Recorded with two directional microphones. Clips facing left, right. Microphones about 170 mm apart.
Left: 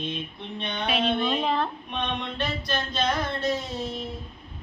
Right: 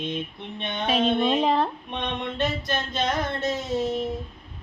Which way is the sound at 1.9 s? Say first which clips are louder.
Right 1 dB; 20° right (ahead or behind).